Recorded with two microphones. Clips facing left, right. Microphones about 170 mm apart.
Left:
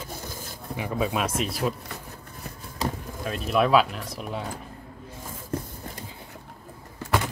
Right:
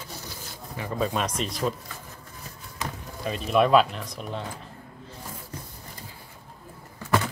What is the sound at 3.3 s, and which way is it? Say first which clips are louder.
Speech: right 1 dB; centre (ahead or behind).